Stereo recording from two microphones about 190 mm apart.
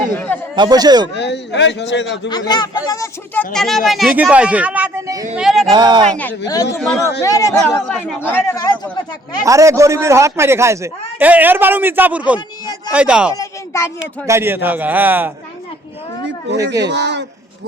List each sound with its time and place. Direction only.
0.1 s speech: 10° left (ahead or behind)
0.5 s speech: 20° right (ahead or behind)
1.1 s a man's voice: 65° left (ahead or behind)
2.3 s speech: 20° left (ahead or behind)
3.3 s speech: centre (ahead or behind); by 5.2 s 15° right (ahead or behind)
5.3 s speech: centre (ahead or behind)
5.7 s speech: 25° right (ahead or behind)
6.1 s speech: 10° left (ahead or behind)
7.2 s speech: 15° left (ahead or behind)
7.9 s speech: centre (ahead or behind)
9.4 s speech: 15° right (ahead or behind)
13.3 s speech: 15° left (ahead or behind)
14.0 s speech: 15° right (ahead or behind)
16.8 s speech: 65° right (ahead or behind)